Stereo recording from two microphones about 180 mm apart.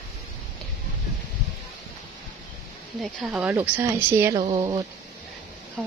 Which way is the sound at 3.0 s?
Centre (ahead or behind).